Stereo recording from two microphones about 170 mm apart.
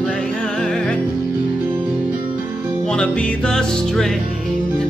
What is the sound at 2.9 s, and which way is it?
Music, 5° left (ahead or behind).